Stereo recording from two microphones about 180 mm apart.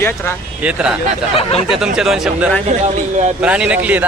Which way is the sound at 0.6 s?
5° right (ahead or behind).